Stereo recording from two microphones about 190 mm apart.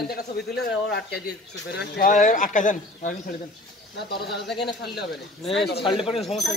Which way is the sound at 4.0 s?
60° left (ahead or behind).